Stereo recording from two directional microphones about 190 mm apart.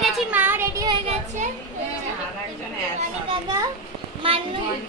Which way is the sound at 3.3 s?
20° right (ahead or behind).